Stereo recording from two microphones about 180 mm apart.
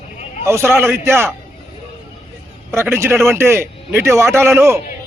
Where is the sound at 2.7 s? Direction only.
15° right (ahead or behind).